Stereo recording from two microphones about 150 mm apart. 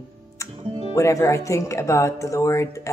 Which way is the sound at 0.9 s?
20° left (ahead or behind).